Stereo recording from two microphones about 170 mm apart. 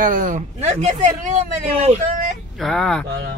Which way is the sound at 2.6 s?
5° left (ahead or behind).